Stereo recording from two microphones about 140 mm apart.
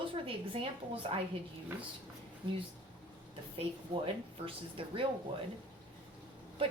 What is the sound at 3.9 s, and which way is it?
A woman's voice, 35° right (ahead or behind).